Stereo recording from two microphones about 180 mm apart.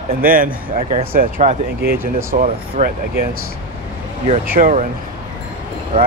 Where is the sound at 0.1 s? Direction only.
50° right (ahead or behind).